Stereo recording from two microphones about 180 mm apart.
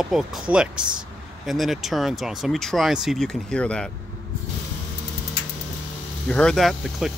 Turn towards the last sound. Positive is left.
turn(degrees=0)  # may be behind; listen again after turning